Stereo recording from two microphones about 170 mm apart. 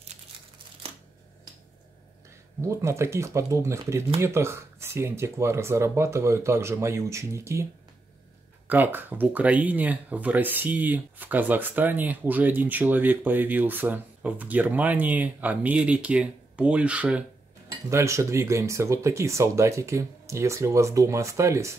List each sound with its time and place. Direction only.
2.8 s speech: 15° right (ahead or behind)
8.6 s speech: 10° right (ahead or behind)